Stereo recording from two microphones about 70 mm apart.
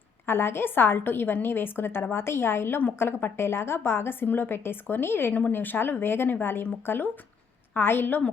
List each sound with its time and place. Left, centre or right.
0.3 s a woman's voice: left